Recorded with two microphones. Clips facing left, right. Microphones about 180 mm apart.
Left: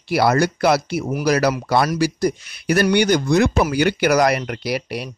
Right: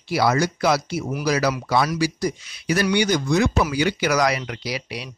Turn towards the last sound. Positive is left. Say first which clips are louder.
# left 6 dB
turn(degrees=50)  # may be behind; listen again after turning